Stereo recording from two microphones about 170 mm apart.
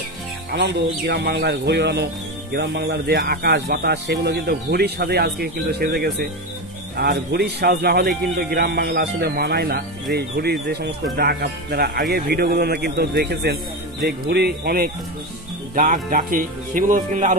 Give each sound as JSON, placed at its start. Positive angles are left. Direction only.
{"t": 0.6, "sound": "speech", "side_deg": -80}
{"t": 15.7, "sound": "speech", "side_deg": -50}